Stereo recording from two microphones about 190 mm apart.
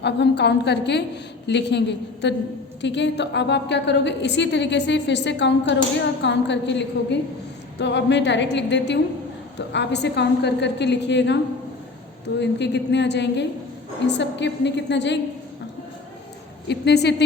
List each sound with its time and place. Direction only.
0.0 s a woman's voice: 65° left (ahead or behind)
12.4 s a woman's voice: 65° left (ahead or behind)
16.6 s a woman's voice: 60° left (ahead or behind)